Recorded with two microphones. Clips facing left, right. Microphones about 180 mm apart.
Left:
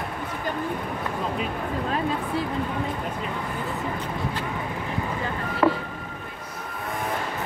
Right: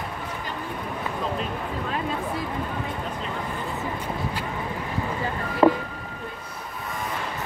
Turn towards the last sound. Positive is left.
turn(degrees=-25)  # may be behind; listen again after turning